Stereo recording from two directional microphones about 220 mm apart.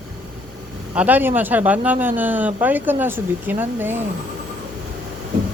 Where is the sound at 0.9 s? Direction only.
10° right (ahead or behind).